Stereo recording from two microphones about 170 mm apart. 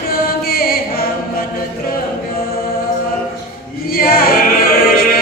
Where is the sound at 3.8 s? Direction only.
60° left (ahead or behind).